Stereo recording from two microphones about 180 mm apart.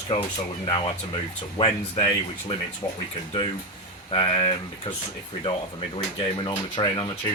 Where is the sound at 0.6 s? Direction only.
30° left (ahead or behind).